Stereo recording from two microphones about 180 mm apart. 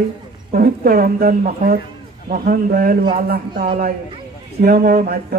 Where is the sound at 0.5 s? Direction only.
55° right (ahead or behind).